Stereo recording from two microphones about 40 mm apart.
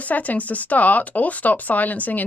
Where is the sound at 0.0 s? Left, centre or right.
Left.